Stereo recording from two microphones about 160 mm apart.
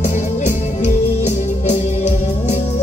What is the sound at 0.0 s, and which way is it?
Music, 45° left (ahead or behind).